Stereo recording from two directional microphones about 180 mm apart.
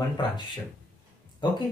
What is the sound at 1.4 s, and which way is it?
Speech, 25° left (ahead or behind).